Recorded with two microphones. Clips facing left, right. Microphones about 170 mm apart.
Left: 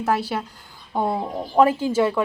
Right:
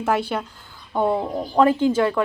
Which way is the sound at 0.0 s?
Centre (ahead or behind).